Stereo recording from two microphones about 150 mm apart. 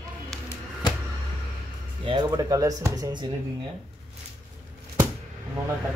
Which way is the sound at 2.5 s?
25° right (ahead or behind).